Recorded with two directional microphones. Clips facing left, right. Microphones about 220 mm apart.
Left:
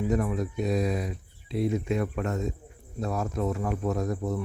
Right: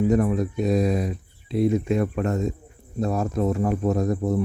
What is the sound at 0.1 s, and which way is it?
Speech, 40° right (ahead or behind).